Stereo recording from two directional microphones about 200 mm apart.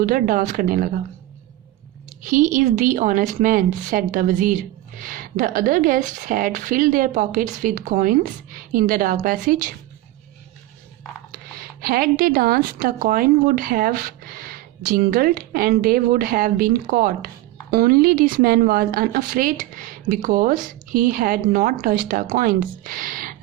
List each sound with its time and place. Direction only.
0.0 s a woman's voice: 45° right (ahead or behind)
2.2 s a woman's voice: 40° right (ahead or behind)
11.3 s a woman's voice: 45° right (ahead or behind)